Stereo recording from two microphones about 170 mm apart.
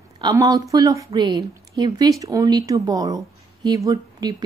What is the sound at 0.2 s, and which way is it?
Speech, 20° right (ahead or behind).